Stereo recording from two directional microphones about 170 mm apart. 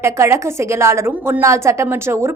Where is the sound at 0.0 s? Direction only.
15° right (ahead or behind).